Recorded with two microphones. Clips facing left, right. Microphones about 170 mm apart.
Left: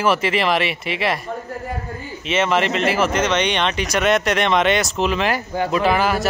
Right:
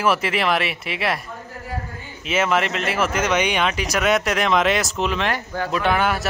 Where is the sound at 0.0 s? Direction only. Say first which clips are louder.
Left 2 dB; centre (ahead or behind).